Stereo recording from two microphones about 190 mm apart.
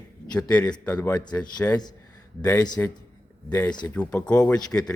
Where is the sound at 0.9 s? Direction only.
20° left (ahead or behind).